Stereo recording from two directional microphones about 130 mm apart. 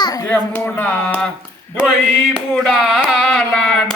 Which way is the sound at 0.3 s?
15° left (ahead or behind).